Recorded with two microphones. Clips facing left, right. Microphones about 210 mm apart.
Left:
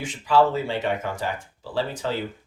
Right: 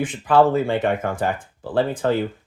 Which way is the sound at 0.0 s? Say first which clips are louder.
Right 4 dB; 55° right (ahead or behind).